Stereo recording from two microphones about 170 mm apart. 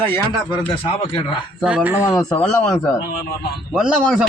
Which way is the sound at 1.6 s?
10° right (ahead or behind).